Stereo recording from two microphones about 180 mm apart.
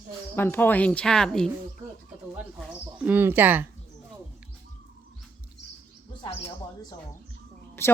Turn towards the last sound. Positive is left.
turn(degrees=15)  # may be behind; listen again after turning